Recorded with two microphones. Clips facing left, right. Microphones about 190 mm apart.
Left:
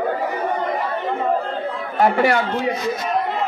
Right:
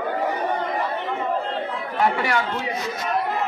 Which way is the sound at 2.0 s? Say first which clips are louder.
Left 6 dB; 40° left (ahead or behind).